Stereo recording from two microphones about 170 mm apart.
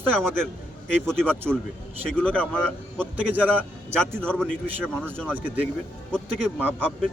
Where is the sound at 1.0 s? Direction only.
5° left (ahead or behind).